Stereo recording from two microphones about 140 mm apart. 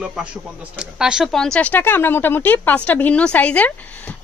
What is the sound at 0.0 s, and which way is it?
Speech, 5° right (ahead or behind).